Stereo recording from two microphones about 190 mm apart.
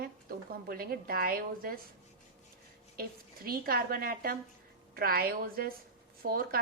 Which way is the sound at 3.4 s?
50° right (ahead or behind).